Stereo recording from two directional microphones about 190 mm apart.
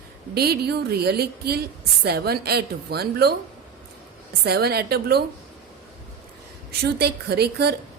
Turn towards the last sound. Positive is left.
turn(degrees=-55)  # may be behind; listen again after turning